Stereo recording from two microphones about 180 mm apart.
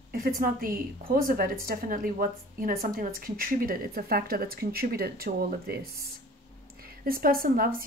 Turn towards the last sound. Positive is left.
turn(degrees=-55)  # may be behind; listen again after turning